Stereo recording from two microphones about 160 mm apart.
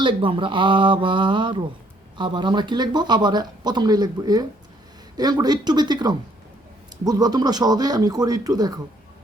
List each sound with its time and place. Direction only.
0.0 s speech: 30° right (ahead or behind)